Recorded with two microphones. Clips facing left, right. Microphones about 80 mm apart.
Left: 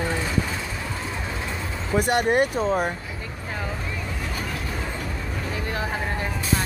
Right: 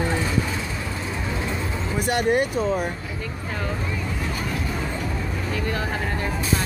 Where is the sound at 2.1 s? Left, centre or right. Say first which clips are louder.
Right 1 dB; left.